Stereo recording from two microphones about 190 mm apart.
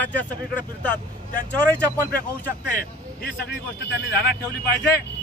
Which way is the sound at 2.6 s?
45° left (ahead or behind).